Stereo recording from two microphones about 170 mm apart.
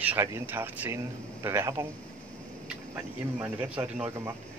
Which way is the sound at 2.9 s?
10° right (ahead or behind).